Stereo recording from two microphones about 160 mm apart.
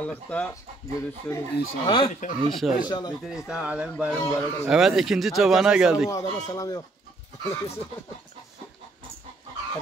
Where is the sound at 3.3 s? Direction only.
5° right (ahead or behind).